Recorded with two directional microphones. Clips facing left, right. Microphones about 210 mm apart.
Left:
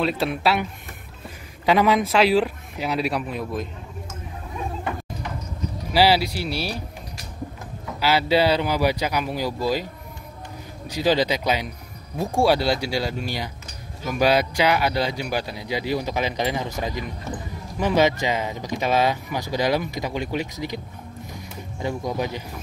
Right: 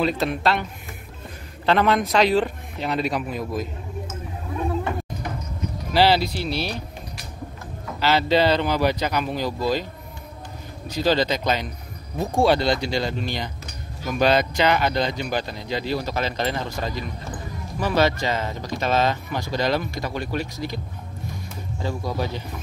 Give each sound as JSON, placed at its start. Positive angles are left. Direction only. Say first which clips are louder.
{"t": 0.0, "sound": "speech", "louder": "even", "side_deg": 5}
{"t": 1.7, "sound": "speech", "louder": "left 1 dB", "side_deg": 10}
{"t": 5.9, "sound": "speech", "louder": "even", "side_deg": 10}
{"t": 8.0, "sound": "speech", "louder": "even", "side_deg": 10}
{"t": 11.0, "sound": "speech", "louder": "even", "side_deg": 10}